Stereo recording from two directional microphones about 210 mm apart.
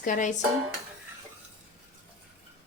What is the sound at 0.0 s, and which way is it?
Speech, 35° left (ahead or behind).